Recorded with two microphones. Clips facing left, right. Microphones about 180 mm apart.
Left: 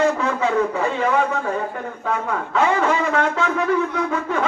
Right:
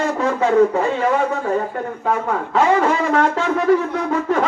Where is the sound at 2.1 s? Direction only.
45° right (ahead or behind).